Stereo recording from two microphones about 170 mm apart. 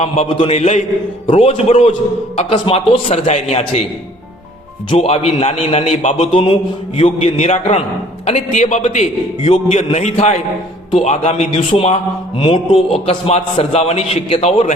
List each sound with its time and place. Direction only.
0.0 s a man's voice: 40° left (ahead or behind)
4.9 s a man's voice: 40° left (ahead or behind)